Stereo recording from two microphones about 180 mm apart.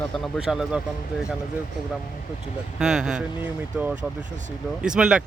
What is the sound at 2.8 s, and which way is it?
Speech, 5° right (ahead or behind).